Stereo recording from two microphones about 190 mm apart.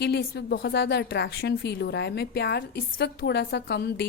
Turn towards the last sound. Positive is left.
turn(degrees=60)  # may be behind; listen again after turning